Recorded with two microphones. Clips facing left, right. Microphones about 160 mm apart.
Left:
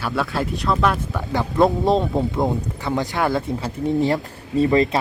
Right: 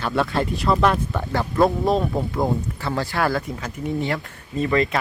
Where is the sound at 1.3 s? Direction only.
20° left (ahead or behind).